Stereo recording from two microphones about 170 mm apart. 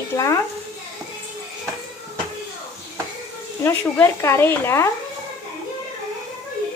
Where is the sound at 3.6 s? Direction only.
15° left (ahead or behind).